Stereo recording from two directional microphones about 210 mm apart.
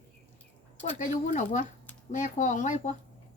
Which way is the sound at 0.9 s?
35° left (ahead or behind).